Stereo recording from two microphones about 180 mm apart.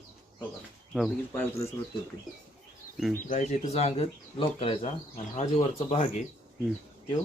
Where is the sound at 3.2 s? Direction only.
40° left (ahead or behind).